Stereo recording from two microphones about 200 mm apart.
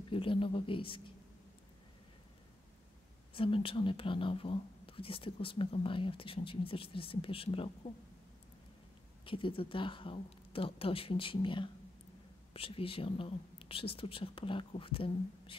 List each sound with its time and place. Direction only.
0.1 s speech: 25° left (ahead or behind)
3.3 s speech: 25° left (ahead or behind)
9.2 s speech: 25° left (ahead or behind)